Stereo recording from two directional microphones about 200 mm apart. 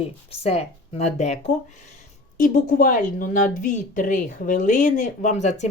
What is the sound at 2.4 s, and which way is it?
Speech, 45° left (ahead or behind).